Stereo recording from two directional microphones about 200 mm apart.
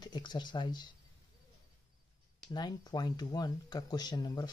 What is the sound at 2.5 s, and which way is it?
Speech, 20° left (ahead or behind).